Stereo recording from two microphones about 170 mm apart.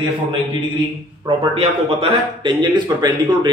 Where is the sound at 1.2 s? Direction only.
35° right (ahead or behind).